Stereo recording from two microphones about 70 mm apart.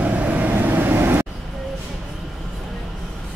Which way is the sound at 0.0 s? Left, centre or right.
Right.